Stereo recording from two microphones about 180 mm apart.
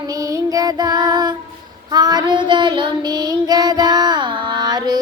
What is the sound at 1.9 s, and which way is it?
Child singing, 20° right (ahead or behind).